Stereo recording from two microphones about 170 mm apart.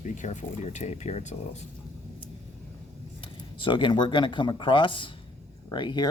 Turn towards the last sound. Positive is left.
turn(degrees=25)  # may be behind; listen again after turning